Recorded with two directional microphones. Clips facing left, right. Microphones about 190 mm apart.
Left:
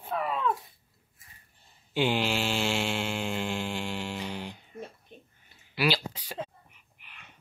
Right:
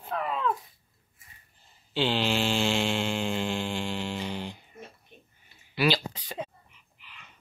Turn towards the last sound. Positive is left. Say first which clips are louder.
# right 1 dB
turn(degrees=55)  # may be behind; listen again after turning